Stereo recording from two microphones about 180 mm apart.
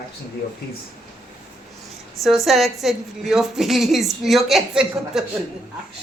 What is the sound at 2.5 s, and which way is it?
A woman's voice, centre (ahead or behind).